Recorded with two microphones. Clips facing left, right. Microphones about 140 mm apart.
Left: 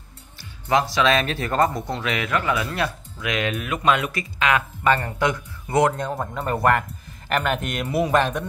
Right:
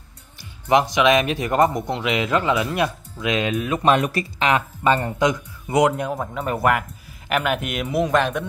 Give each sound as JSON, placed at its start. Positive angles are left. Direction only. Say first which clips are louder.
{"t": 0.4, "sound": "speech", "louder": "right 3 dB", "side_deg": -20}
{"t": 6.1, "sound": "a man's voice", "louder": "even", "side_deg": 0}